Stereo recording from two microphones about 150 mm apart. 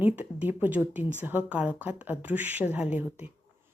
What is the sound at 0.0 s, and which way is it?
Speech, 10° right (ahead or behind).